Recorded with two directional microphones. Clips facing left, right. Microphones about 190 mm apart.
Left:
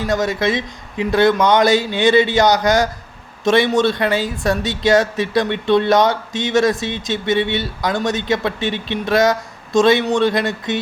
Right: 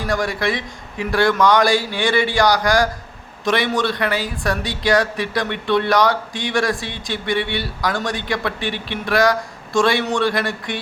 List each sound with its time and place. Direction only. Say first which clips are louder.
0.1 s speech: left 3 dB; 20° left (ahead or behind)